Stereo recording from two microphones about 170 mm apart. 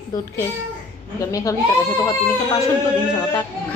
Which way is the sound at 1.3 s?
20° left (ahead or behind).